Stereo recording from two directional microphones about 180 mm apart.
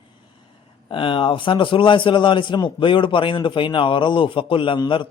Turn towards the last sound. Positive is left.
turn(degrees=25)  # may be behind; listen again after turning